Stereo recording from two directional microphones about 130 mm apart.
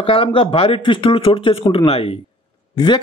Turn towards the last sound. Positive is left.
turn(degrees=35)  # may be behind; listen again after turning